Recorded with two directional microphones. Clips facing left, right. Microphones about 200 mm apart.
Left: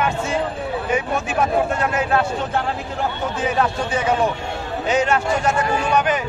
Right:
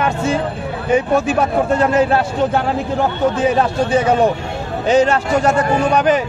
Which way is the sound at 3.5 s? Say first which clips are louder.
Right 6 dB; 35° right (ahead or behind).